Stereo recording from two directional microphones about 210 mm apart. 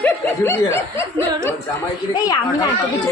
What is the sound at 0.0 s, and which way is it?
Speech, 10° left (ahead or behind).